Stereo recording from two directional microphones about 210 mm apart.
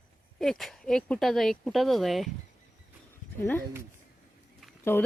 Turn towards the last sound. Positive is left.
turn(degrees=10)  # may be behind; listen again after turning